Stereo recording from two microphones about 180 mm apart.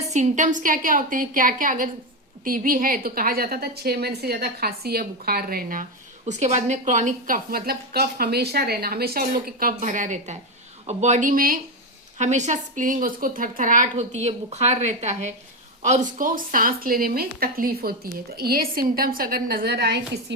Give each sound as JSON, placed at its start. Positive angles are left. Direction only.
{"t": 0.1, "sound": "a woman's voice", "side_deg": -45}
{"t": 6.2, "sound": "a woman's voice", "side_deg": -40}